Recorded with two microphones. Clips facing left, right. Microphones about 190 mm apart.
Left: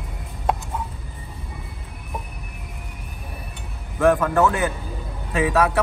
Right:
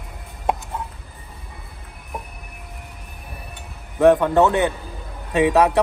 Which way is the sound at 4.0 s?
20° right (ahead or behind).